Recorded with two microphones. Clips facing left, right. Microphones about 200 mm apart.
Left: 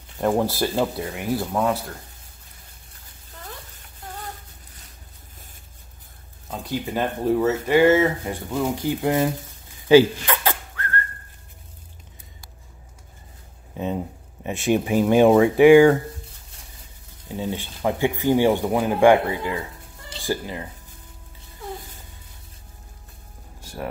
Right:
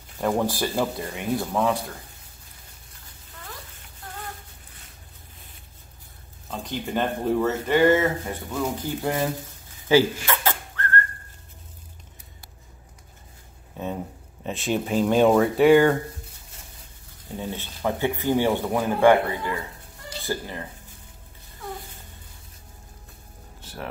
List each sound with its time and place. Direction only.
0.2 s speech: 15° left (ahead or behind)
0.9 s speech: 5° left (ahead or behind)
6.5 s speech: 10° left (ahead or behind)
13.7 s speech: 10° left (ahead or behind)
17.4 s speech: 15° left (ahead or behind)
23.6 s a sound: 10° left (ahead or behind)